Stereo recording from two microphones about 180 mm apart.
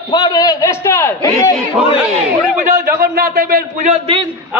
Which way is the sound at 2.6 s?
50° right (ahead or behind).